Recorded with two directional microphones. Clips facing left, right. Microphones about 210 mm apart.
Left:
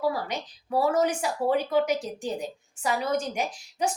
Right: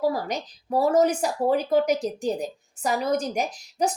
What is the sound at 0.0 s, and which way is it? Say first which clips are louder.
A woman's voice: right 3 dB; 40° right (ahead or behind).